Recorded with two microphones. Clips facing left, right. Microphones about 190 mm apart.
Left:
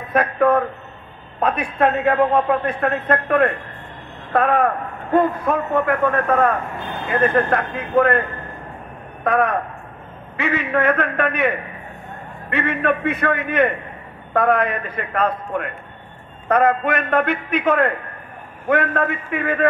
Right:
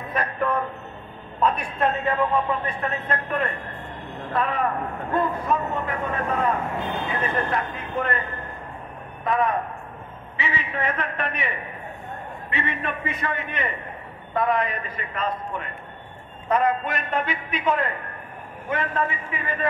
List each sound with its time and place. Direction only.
0.1 s a man's voice: 60° left (ahead or behind)